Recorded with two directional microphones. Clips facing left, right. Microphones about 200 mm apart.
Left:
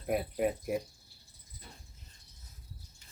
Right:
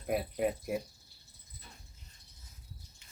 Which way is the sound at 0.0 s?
Centre (ahead or behind).